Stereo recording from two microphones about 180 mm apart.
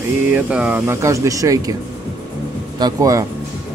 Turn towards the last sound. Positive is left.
turn(degrees=-20)  # may be behind; listen again after turning